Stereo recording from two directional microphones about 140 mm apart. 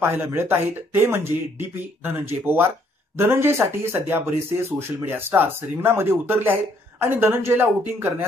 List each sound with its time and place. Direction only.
0.0 s speech: 15° right (ahead or behind)